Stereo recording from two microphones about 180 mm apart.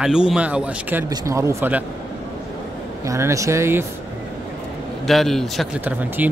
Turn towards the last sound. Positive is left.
turn(degrees=-10)  # may be behind; listen again after turning